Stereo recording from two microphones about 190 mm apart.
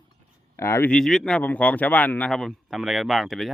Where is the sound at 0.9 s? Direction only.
Centre (ahead or behind).